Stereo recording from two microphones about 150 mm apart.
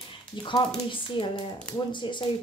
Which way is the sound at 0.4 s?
35° left (ahead or behind).